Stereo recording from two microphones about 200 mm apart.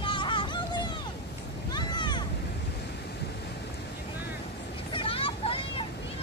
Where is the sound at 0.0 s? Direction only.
25° left (ahead or behind).